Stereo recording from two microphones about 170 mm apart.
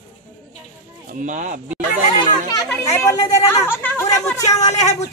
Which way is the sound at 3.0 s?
15° left (ahead or behind).